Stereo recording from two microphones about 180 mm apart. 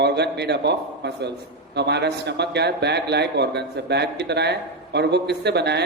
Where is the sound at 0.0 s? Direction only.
70° right (ahead or behind).